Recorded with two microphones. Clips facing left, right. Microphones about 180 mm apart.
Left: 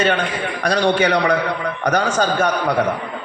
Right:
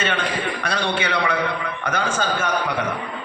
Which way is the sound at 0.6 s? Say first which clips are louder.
Left 11 dB; 45° left (ahead or behind).